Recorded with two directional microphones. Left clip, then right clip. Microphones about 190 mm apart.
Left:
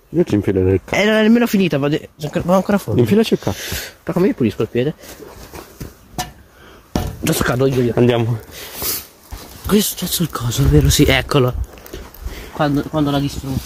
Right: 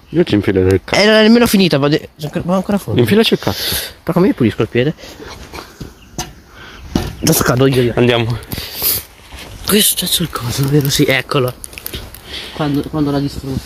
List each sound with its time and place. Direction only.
0.1 s speech: 5° left (ahead or behind)
0.9 s speech: 15° right (ahead or behind)
2.1 s speech: 5° right (ahead or behind)
3.5 s speech: 35° right (ahead or behind)
7.2 s speech: 60° right (ahead or behind)
7.7 s speech: 15° left (ahead or behind)
8.7 s dog: 70° left (ahead or behind)
9.7 s speech: 60° left (ahead or behind)
10.7 s speech: 30° left (ahead or behind)
11.0 s speech: 60° left (ahead or behind)
12.4 s speech: 15° left (ahead or behind)